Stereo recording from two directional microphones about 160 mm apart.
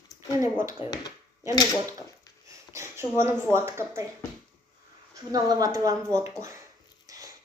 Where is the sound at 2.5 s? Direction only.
15° right (ahead or behind).